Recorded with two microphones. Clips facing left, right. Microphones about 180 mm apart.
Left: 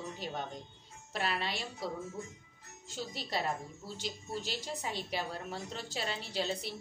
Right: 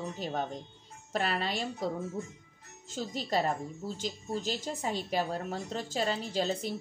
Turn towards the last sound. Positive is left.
turn(degrees=-45)  # may be behind; listen again after turning